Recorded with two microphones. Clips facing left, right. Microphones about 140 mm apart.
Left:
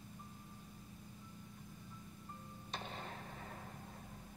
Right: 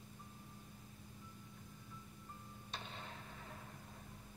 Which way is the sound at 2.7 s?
45° left (ahead or behind).